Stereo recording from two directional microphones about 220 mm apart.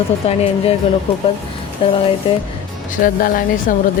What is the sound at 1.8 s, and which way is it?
Speech, 25° left (ahead or behind).